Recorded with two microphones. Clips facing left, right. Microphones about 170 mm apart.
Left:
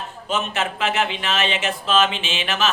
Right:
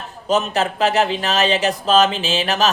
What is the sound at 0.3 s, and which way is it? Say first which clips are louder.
Speech: right 6 dB; 40° right (ahead or behind).